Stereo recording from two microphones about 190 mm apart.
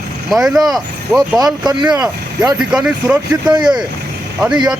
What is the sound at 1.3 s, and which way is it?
Speech, 20° right (ahead or behind).